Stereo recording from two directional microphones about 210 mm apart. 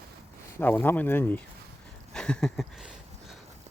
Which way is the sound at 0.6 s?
10° left (ahead or behind).